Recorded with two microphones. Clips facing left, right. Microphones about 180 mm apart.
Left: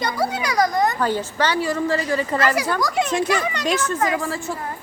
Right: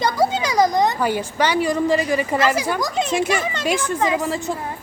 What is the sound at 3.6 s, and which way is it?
Speech, 10° right (ahead or behind).